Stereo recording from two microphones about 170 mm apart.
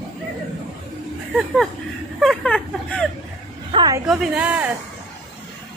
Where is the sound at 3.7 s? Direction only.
25° right (ahead or behind).